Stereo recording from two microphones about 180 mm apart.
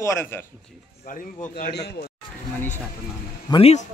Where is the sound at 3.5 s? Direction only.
35° left (ahead or behind).